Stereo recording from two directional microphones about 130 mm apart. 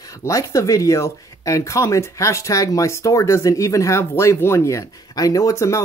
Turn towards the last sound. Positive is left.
turn(degrees=20)  # may be behind; listen again after turning